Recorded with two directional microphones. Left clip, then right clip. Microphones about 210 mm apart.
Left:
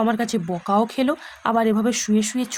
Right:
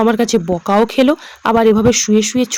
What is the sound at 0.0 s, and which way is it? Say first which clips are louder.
Speech: right 9 dB; 25° right (ahead or behind).